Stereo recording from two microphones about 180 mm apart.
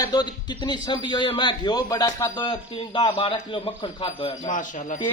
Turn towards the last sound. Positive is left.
turn(degrees=45)  # may be behind; listen again after turning